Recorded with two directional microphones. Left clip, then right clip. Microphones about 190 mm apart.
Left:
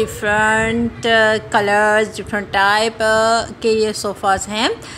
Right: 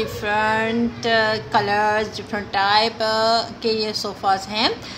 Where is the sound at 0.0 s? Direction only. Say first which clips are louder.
Left 5 dB; 20° left (ahead or behind).